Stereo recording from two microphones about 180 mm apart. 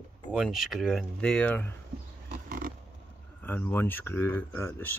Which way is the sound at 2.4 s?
50° right (ahead or behind).